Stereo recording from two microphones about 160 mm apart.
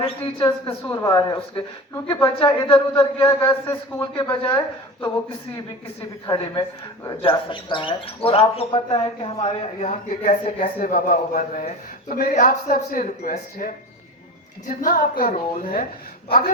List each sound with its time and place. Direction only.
0.0 s a man's voice: 30° left (ahead or behind)
6.2 s speech: 25° left (ahead or behind); by 13.7 s 60° left (ahead or behind)
14.8 s speech: 60° left (ahead or behind)